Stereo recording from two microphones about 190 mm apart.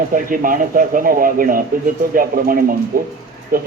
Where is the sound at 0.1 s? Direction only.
45° right (ahead or behind).